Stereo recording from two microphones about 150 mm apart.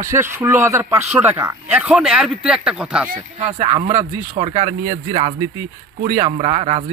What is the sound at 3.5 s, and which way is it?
A man's voice, 35° right (ahead or behind).